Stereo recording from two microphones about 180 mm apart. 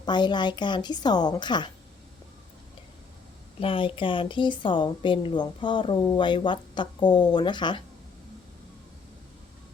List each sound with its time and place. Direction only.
0.0 s a woman's voice: 25° left (ahead or behind)
3.6 s a woman's voice: 30° left (ahead or behind)